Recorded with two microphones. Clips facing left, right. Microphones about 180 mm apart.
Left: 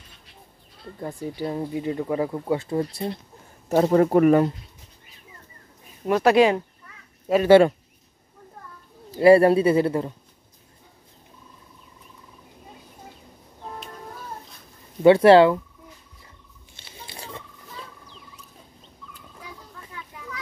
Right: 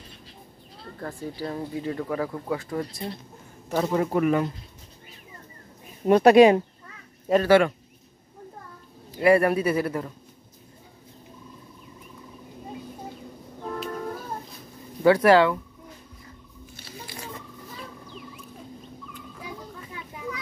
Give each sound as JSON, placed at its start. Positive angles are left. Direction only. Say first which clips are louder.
{"t": 0.9, "sound": "speech", "louder": "left 3 dB", "side_deg": 20}
{"t": 3.6, "sound": "speech", "louder": "left 6 dB", "side_deg": 40}
{"t": 6.0, "sound": "speech", "louder": "right 3 dB", "side_deg": -25}
{"t": 7.4, "sound": "speech", "louder": "left 6 dB", "side_deg": 30}
{"t": 9.1, "sound": "speech", "louder": "left 5 dB", "side_deg": 30}
{"t": 15.0, "sound": "speech", "louder": "left 4 dB", "side_deg": 25}
{"t": 16.7, "sound": "patter", "louder": "right 2 dB", "side_deg": 25}